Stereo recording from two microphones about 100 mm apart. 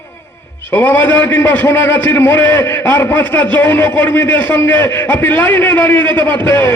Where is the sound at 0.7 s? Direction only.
15° left (ahead or behind).